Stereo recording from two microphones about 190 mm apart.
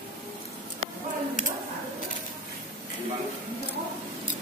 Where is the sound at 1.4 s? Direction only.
40° left (ahead or behind).